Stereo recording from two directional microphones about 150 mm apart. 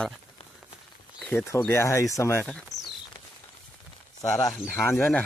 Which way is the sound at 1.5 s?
15° left (ahead or behind).